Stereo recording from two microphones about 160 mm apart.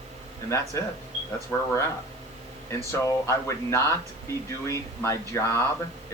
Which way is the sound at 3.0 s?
15° left (ahead or behind).